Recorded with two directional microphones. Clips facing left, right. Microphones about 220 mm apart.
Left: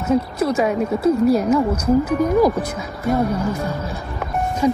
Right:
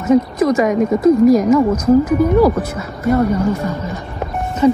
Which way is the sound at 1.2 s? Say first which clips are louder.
Right 6 dB; 10° right (ahead or behind).